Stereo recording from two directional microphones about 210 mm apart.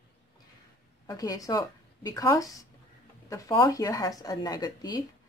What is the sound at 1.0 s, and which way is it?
Speech, 15° left (ahead or behind).